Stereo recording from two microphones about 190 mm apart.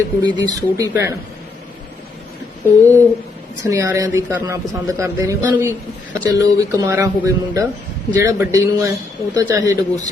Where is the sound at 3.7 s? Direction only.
15° right (ahead or behind).